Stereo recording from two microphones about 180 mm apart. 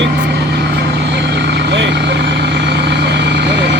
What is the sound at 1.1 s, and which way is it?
Vehicle, 70° right (ahead or behind).